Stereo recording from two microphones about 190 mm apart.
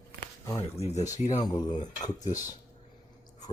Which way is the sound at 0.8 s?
35° left (ahead or behind).